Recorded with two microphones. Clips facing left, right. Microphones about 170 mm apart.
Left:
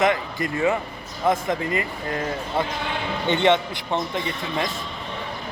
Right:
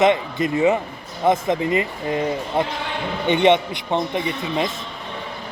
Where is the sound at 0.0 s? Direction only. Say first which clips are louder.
Right 4 dB; 20° right (ahead or behind).